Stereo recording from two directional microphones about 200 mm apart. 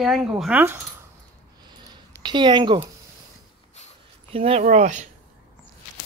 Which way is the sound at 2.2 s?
20° right (ahead or behind).